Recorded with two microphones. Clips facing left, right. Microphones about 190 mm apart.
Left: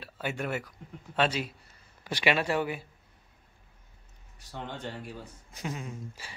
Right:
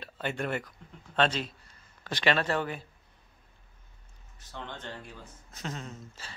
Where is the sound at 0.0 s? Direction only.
5° left (ahead or behind).